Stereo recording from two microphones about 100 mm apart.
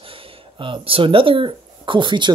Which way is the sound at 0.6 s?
60° right (ahead or behind).